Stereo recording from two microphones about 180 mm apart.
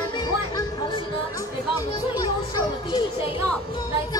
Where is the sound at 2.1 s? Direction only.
20° left (ahead or behind).